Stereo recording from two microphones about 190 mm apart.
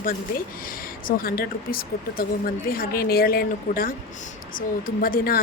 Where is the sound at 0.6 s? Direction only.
50° left (ahead or behind).